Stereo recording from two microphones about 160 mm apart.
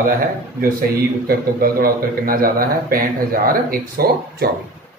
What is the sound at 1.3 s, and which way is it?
A man's voice, 65° right (ahead or behind).